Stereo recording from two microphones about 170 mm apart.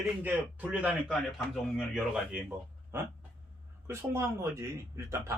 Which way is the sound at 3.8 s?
15° right (ahead or behind).